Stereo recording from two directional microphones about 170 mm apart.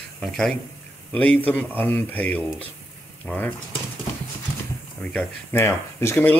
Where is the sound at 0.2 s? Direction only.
Centre (ahead or behind).